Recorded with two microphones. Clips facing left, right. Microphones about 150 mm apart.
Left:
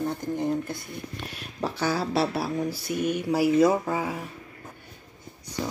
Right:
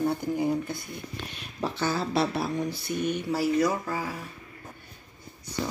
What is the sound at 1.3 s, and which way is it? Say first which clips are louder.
Speech: left 1 dB; 10° left (ahead or behind).